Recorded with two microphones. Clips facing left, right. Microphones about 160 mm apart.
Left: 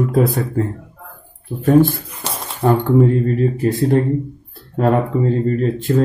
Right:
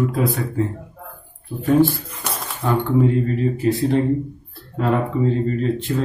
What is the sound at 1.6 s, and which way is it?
Speech, 55° left (ahead or behind).